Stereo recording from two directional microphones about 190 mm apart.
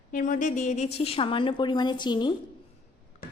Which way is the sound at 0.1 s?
45° left (ahead or behind).